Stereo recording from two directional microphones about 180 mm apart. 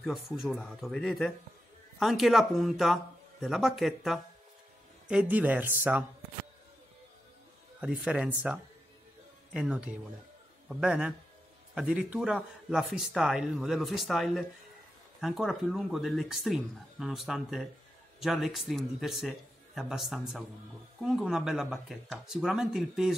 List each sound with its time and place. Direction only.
0.0 s speech: centre (ahead or behind)
8.0 s speech: 5° right (ahead or behind)
9.5 s speech: 5° right (ahead or behind)